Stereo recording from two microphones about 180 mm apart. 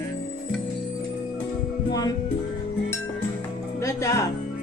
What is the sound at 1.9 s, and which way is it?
Speech, 20° left (ahead or behind).